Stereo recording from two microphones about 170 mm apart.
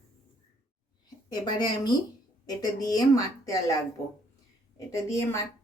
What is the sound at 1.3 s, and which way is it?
Speech, 25° left (ahead or behind).